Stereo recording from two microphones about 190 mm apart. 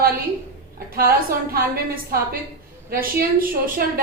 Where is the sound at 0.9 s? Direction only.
50° right (ahead or behind).